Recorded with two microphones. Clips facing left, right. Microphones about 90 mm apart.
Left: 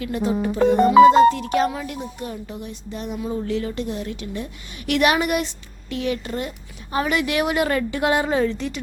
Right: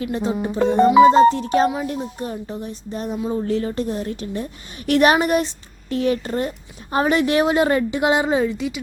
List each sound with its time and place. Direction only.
0.0 s a woman's voice: 30° right (ahead or behind); by 8.8 s 5° right (ahead or behind)